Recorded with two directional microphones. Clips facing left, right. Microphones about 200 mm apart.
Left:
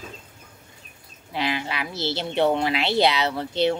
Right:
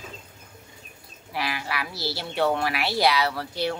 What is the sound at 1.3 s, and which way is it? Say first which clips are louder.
A woman's voice: left 3 dB; 20° left (ahead or behind).